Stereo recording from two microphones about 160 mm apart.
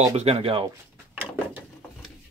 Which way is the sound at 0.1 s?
40° right (ahead or behind).